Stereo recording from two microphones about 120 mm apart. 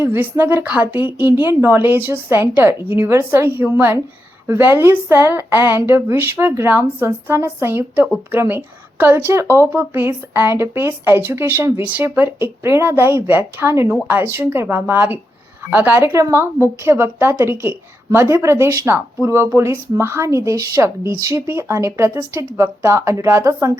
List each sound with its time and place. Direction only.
0.0 s a woman's voice: 15° right (ahead or behind)